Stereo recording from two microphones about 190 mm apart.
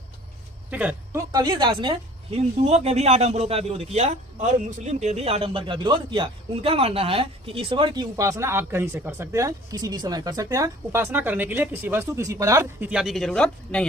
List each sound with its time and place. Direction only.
0.7 s speech: 5° right (ahead or behind)
1.3 s speech: 20° right (ahead or behind)
12.9 s speech: 5° right (ahead or behind)